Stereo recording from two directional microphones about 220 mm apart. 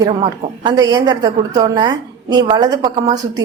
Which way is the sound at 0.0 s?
20° right (ahead or behind).